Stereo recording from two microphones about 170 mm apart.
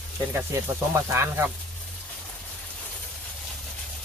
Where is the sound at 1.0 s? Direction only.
15° right (ahead or behind).